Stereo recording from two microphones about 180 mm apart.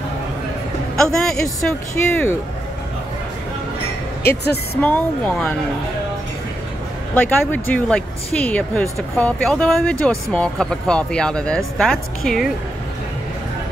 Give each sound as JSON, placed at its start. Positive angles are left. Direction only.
{"t": 0.9, "sound": "a woman's voice", "side_deg": 5}
{"t": 4.2, "sound": "speech", "side_deg": 60}
{"t": 4.7, "sound": "speech", "side_deg": 10}
{"t": 7.2, "sound": "a woman's voice", "side_deg": 10}